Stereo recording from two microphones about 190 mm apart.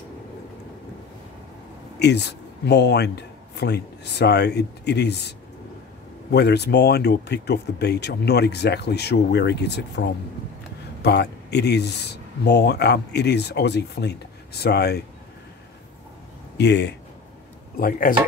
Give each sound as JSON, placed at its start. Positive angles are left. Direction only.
{"t": 2.0, "sound": "speech", "side_deg": 60}
{"t": 6.3, "sound": "speech", "side_deg": 60}
{"t": 16.5, "sound": "speech", "side_deg": 65}
{"t": 17.7, "sound": "speech", "side_deg": 50}